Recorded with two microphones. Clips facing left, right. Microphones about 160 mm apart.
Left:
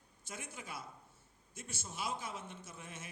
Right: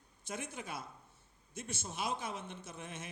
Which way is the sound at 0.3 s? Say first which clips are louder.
Right 5 dB; 20° right (ahead or behind).